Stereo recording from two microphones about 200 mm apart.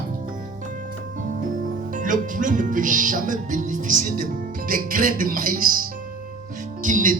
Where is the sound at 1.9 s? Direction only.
40° right (ahead or behind).